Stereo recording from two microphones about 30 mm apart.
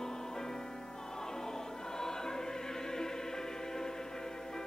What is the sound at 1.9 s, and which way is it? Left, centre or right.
Choir, centre.